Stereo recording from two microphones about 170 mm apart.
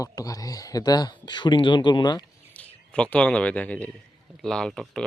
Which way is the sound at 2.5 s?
5° left (ahead or behind).